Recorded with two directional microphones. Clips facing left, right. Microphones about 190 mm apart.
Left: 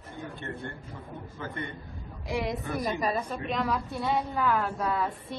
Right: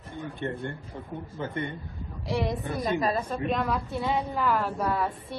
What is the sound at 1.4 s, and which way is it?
Speech, 25° right (ahead or behind).